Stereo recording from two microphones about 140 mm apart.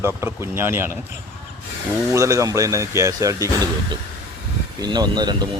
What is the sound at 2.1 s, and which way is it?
Speech, 25° right (ahead or behind).